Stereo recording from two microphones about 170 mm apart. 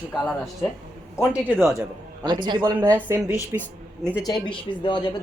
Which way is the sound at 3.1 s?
10° right (ahead or behind).